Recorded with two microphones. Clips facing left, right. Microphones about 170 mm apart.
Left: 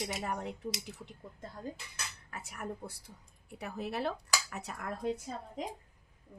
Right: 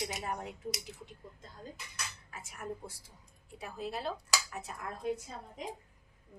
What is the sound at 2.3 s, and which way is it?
A woman's voice, 65° left (ahead or behind).